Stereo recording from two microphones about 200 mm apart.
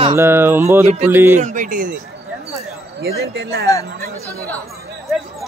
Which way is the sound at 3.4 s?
50° right (ahead or behind).